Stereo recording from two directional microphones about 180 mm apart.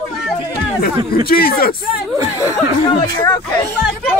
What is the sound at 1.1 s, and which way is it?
Speech, 55° left (ahead or behind).